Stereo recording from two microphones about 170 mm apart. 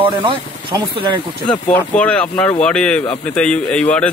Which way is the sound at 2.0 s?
5° left (ahead or behind).